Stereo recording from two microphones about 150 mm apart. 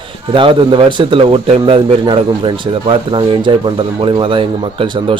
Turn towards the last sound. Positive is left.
turn(degrees=-35)  # may be behind; listen again after turning